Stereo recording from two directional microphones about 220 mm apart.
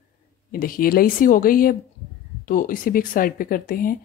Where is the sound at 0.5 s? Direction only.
40° left (ahead or behind).